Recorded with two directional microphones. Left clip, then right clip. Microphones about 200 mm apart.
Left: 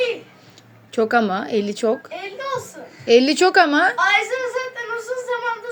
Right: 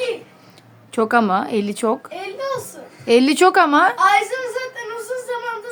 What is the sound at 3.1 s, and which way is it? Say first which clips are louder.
Speech: right 1 dB; 20° right (ahead or behind).